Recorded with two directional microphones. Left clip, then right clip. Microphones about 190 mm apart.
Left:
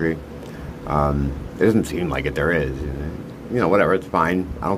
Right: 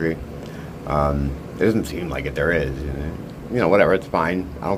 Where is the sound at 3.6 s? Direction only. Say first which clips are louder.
Right 1 dB; centre (ahead or behind).